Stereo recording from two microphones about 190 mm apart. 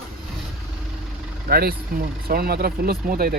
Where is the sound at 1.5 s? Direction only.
50° right (ahead or behind).